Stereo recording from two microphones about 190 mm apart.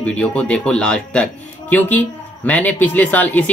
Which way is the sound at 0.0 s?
5° left (ahead or behind).